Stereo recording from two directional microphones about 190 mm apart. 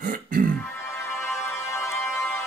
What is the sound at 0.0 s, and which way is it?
Music, 45° right (ahead or behind).